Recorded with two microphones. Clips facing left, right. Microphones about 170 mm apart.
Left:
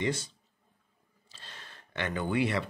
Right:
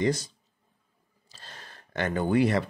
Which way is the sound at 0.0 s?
40° right (ahead or behind).